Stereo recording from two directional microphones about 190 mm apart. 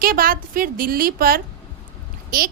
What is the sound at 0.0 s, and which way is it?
A woman's voice, 50° right (ahead or behind).